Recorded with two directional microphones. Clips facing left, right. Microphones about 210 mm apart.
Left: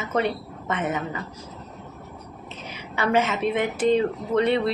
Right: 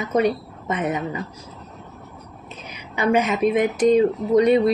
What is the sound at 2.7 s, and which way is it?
A woman's voice, 15° right (ahead or behind).